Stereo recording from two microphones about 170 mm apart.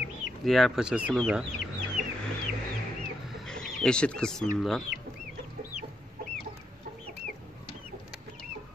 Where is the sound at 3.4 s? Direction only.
5° left (ahead or behind).